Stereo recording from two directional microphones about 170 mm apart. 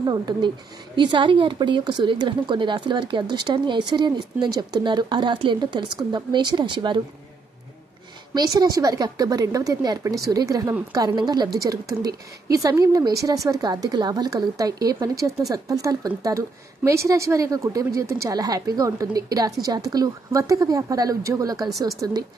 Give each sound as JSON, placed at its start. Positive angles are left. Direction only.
{"t": 0.0, "sound": "speech", "side_deg": -25}
{"t": 8.4, "sound": "speech", "side_deg": -25}
{"t": 11.9, "sound": "a woman's voice", "side_deg": -65}
{"t": 12.4, "sound": "speech", "side_deg": -20}